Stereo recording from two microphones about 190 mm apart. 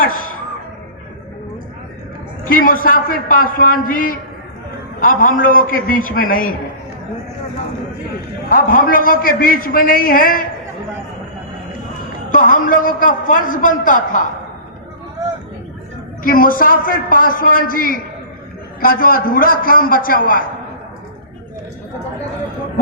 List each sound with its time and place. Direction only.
2.4 s a man's voice: 45° left (ahead or behind)
8.5 s a man's voice: 50° left (ahead or behind)
12.3 s a man's voice: 45° left (ahead or behind)
16.2 s a man's voice: 50° left (ahead or behind)